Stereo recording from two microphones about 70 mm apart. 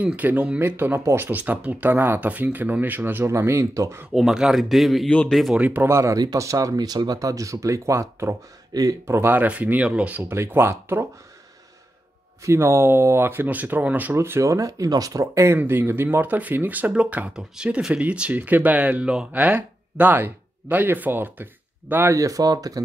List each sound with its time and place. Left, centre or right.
0.0 s speech: right
0.6 s speech: right
1.4 s speech: right
3.3 s speech: right
4.1 s speech: centre
5.0 s speech: centre
5.3 s speech: centre
5.6 s speech: right
5.9 s speech: right; by 10.2 s centre
10.2 s speech: right
12.4 s speech: right
14.1 s speech: right
15.4 s speech: right
22.1 s speech: right